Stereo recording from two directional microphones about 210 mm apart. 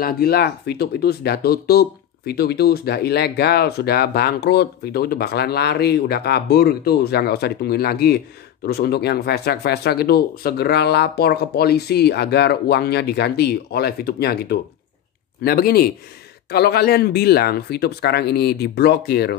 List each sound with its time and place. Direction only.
0.0 s speech: 45° left (ahead or behind)